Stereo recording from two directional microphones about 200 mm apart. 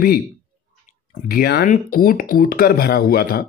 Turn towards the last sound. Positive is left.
turn(degrees=50)  # may be behind; listen again after turning